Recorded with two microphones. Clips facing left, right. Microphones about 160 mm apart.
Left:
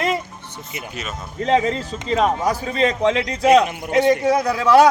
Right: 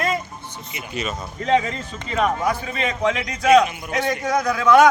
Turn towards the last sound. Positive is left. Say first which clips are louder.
# left 1 dB
turn(degrees=35)  # may be behind; listen again after turning